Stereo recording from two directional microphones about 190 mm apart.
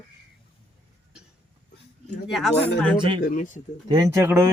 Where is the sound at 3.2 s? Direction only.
40° left (ahead or behind).